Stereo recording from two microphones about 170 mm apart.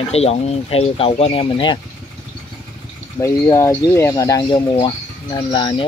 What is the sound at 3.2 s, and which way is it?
Speech, 15° left (ahead or behind).